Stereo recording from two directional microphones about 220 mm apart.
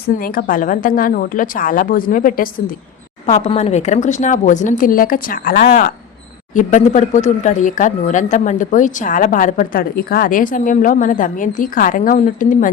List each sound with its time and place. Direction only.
0.2 s speech: 40° left (ahead or behind)